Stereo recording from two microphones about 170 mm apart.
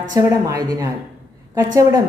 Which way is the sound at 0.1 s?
20° right (ahead or behind).